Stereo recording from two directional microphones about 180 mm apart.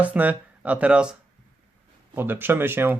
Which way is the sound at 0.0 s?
10° right (ahead or behind).